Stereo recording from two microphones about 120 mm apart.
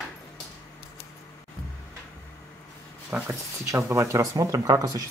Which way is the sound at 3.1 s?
15° right (ahead or behind).